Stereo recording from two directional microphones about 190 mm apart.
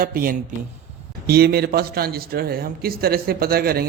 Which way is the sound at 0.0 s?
50° right (ahead or behind).